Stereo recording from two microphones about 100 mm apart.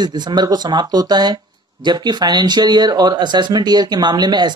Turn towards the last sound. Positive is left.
turn(degrees=-45)  # may be behind; listen again after turning